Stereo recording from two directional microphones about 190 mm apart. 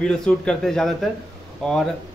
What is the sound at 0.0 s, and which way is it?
A man's voice, 5° left (ahead or behind).